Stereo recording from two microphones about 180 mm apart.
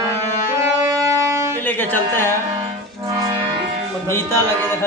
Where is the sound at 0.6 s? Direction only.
15° right (ahead or behind).